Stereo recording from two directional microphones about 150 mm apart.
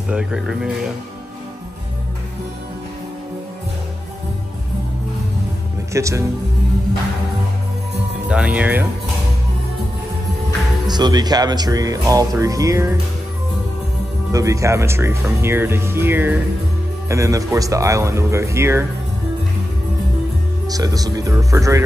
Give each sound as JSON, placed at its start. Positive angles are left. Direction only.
{"t": 0.1, "sound": "speech", "side_deg": -5}
{"t": 5.9, "sound": "speech", "side_deg": -20}
{"t": 8.3, "sound": "speech", "side_deg": -10}
{"t": 10.9, "sound": "speech", "side_deg": -30}
{"t": 14.3, "sound": "speech", "side_deg": -20}
{"t": 20.6, "sound": "speech", "side_deg": -25}